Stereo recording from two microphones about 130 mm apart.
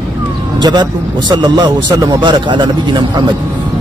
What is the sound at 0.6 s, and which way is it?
A man's voice, 35° right (ahead or behind).